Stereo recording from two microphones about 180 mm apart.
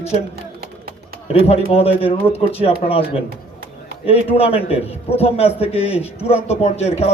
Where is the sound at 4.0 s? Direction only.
30° left (ahead or behind).